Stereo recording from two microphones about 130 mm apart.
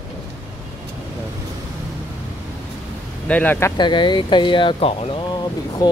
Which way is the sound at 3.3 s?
10° left (ahead or behind).